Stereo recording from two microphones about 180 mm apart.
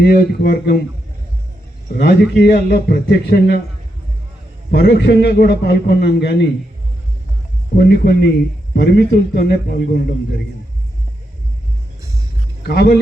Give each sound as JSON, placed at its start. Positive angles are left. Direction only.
{"t": 0.0, "sound": "a man's voice", "side_deg": 55}
{"t": 1.9, "sound": "a man's voice", "side_deg": 60}
{"t": 4.7, "sound": "a man's voice", "side_deg": 65}
{"t": 7.8, "sound": "a man's voice", "side_deg": 65}
{"t": 12.6, "sound": "a man's voice", "side_deg": 65}